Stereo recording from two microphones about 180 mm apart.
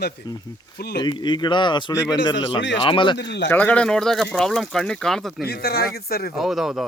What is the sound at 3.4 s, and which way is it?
Speech, 10° left (ahead or behind).